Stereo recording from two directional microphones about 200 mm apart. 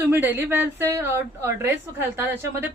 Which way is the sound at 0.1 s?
10° right (ahead or behind).